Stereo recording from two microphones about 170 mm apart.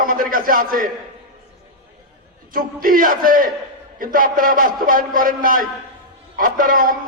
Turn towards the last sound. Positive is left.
turn(degrees=-55)  # may be behind; listen again after turning